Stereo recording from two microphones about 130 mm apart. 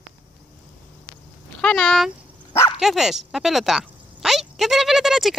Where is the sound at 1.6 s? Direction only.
5° left (ahead or behind).